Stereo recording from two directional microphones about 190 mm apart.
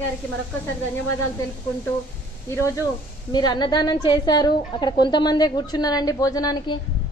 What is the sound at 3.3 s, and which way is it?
A woman's voice, 20° left (ahead or behind).